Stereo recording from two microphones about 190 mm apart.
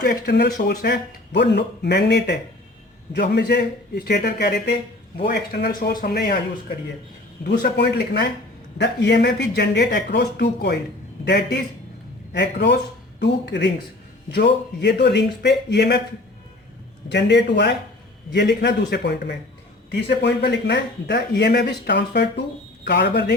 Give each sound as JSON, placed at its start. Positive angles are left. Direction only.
{"t": 0.0, "sound": "speech", "side_deg": 60}
{"t": 7.4, "sound": "speech", "side_deg": 60}
{"t": 12.3, "sound": "speech", "side_deg": 65}
{"t": 17.1, "sound": "speech", "side_deg": 65}